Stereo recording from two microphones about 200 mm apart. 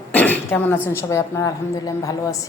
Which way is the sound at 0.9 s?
15° left (ahead or behind).